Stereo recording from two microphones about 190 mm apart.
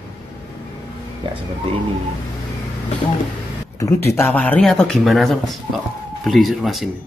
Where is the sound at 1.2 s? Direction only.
25° right (ahead or behind).